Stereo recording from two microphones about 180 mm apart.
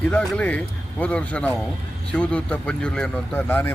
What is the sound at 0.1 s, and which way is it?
Speech, 5° left (ahead or behind).